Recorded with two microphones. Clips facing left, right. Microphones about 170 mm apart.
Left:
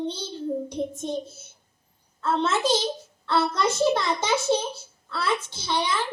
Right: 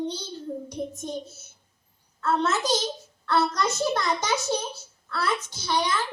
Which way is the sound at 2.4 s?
30° left (ahead or behind).